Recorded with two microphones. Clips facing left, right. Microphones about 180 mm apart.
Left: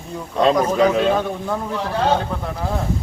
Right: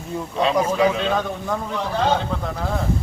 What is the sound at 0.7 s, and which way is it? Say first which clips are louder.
A man's voice: left 3 dB; 10° left (ahead or behind).